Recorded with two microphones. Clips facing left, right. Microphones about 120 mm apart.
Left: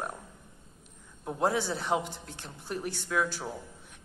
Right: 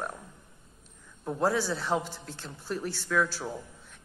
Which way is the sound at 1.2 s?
20° left (ahead or behind).